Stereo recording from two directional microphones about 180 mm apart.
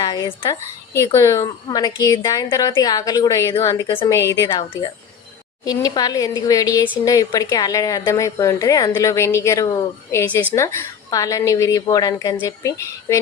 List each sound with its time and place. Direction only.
0.0 s a woman's voice: 20° left (ahead or behind)